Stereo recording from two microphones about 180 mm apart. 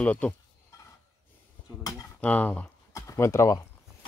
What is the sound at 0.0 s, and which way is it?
Speech, 10° left (ahead or behind).